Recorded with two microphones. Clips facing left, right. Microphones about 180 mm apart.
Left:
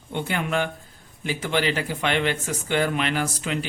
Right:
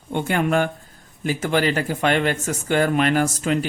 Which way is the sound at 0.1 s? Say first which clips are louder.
Right 5 dB; 50° right (ahead or behind).